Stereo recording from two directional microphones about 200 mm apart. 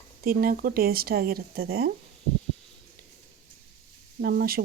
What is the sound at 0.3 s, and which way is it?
Speech, 45° right (ahead or behind).